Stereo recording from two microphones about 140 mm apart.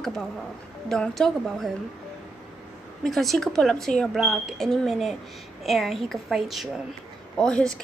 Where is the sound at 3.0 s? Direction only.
Centre (ahead or behind).